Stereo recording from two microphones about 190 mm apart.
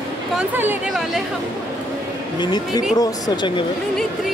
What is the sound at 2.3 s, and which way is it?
Speech, 20° left (ahead or behind).